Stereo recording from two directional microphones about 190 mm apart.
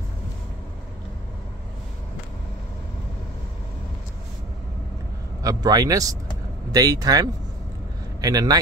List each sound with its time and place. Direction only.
5.4 s a man's voice: 20° right (ahead or behind)